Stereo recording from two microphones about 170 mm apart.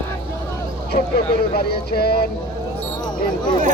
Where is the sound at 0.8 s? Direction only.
65° left (ahead or behind).